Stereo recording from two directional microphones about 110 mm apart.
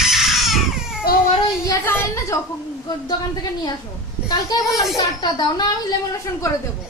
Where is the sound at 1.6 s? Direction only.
20° left (ahead or behind).